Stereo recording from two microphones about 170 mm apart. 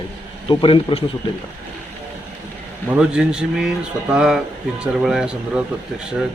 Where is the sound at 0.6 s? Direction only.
30° left (ahead or behind).